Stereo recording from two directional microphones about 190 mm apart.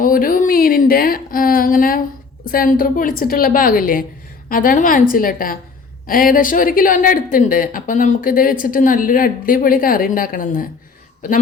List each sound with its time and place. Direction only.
0.0 s a woman's voice: 50° left (ahead or behind)